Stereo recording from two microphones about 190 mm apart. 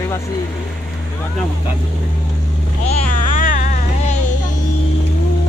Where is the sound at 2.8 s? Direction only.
45° left (ahead or behind).